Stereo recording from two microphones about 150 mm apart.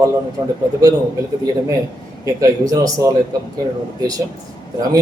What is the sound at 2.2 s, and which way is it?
A man's voice, 20° right (ahead or behind).